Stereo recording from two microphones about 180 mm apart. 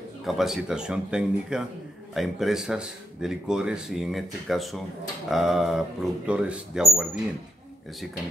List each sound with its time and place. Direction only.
0.2 s speech: centre (ahead or behind)